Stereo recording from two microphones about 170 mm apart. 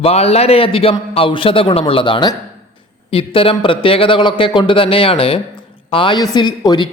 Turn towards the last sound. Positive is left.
turn(degrees=25)  # may be behind; listen again after turning